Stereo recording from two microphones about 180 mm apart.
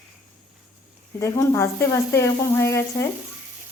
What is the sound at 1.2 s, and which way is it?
Speech, 15° left (ahead or behind).